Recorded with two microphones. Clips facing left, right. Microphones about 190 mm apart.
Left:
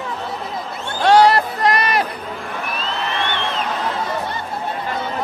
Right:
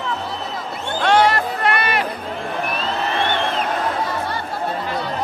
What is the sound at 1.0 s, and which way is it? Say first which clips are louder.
Music: left 4 dB; 35° left (ahead or behind).